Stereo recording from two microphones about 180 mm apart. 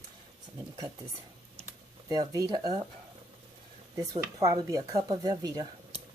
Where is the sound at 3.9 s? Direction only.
20° right (ahead or behind).